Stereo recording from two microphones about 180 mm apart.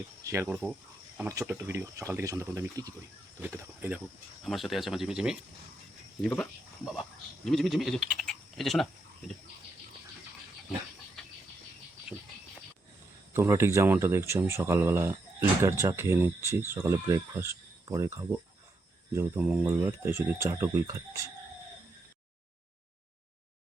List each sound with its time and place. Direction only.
0.4 s speech: 5° right (ahead or behind)
1.3 s speech: 15° right (ahead or behind); by 8.9 s centre (ahead or behind)
11.2 s a sound: 5° left (ahead or behind)
13.3 s speech: 15° right (ahead or behind)